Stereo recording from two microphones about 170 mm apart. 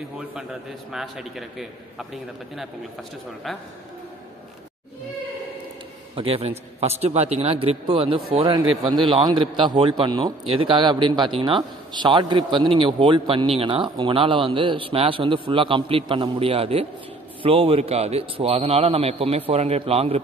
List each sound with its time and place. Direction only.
0.2 s a man's voice: 10° right (ahead or behind)
3.4 s a man's voice: centre (ahead or behind)
6.1 s a man's voice: 35° right (ahead or behind)